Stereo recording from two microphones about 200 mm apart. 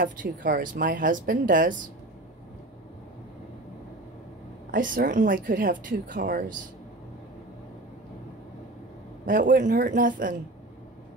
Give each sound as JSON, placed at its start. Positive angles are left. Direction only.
{"t": 0.0, "sound": "speech", "side_deg": -45}
{"t": 4.6, "sound": "speech", "side_deg": -45}
{"t": 9.2, "sound": "a man's voice", "side_deg": -40}